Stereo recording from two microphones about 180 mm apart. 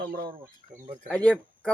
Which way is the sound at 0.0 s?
60° right (ahead or behind).